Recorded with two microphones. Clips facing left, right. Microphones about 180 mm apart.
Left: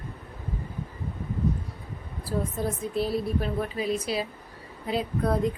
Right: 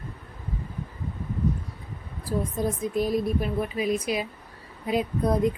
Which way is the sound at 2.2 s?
15° right (ahead or behind).